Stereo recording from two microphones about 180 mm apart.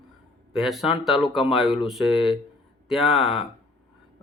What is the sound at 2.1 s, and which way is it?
Speech, 30° left (ahead or behind).